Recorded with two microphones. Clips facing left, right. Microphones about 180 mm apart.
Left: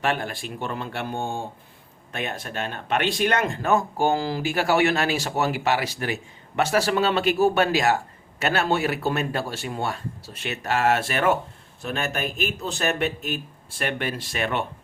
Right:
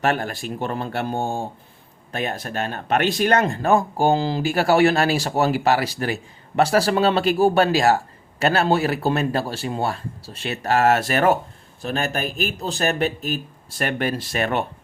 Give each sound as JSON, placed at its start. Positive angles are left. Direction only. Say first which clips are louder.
{"t": 0.0, "sound": "speech", "louder": "right 4 dB", "side_deg": -40}
{"t": 4.4, "sound": "speech", "louder": "right 4 dB", "side_deg": -35}